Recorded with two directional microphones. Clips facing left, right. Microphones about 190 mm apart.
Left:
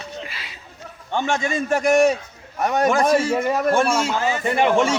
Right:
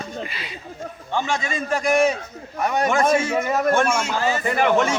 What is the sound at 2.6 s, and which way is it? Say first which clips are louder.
Speech: left 2 dB; 40° left (ahead or behind).